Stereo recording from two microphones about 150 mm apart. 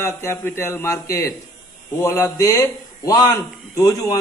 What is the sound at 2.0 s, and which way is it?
A man's voice, 15° left (ahead or behind).